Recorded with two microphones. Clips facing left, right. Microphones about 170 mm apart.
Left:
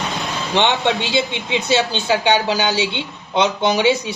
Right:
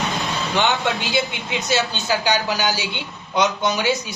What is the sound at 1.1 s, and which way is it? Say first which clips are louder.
A woman's voice: left 3 dB; 25° left (ahead or behind).